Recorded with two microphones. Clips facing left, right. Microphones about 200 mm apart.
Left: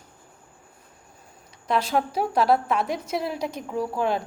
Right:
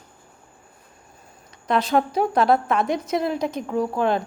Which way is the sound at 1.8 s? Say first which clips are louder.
Right 4 dB; 5° left (ahead or behind).